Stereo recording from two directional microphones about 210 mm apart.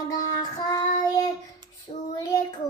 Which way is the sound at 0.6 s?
15° left (ahead or behind).